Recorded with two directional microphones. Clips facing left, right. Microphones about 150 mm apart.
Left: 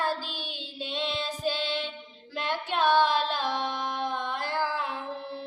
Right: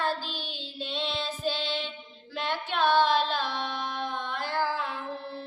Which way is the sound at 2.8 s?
15° left (ahead or behind).